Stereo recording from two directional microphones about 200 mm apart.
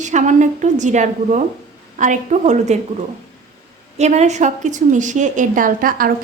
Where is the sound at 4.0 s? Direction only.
35° right (ahead or behind).